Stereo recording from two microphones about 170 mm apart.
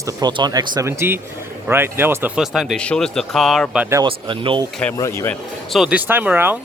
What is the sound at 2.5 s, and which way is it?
Speech, centre (ahead or behind).